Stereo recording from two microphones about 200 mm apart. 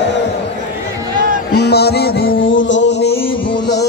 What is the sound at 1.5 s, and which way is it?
Music, 55° left (ahead or behind).